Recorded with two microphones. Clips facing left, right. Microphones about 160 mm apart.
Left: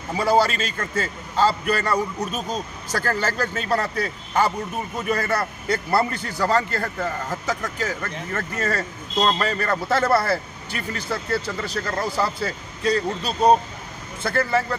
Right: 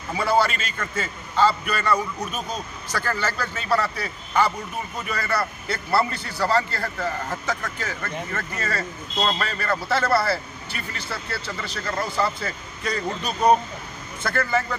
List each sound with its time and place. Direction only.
0.2 s a man's voice: 40° left (ahead or behind)